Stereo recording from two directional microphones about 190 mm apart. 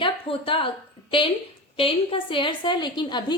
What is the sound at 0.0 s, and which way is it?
Speech, 30° left (ahead or behind).